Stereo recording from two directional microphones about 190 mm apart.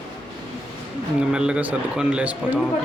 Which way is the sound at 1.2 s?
5° right (ahead or behind).